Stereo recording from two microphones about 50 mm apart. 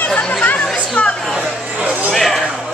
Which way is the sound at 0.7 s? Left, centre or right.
Left.